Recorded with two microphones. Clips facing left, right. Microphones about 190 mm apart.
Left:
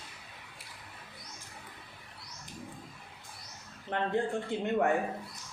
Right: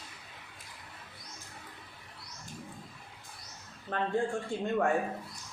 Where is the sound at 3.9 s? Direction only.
20° left (ahead or behind).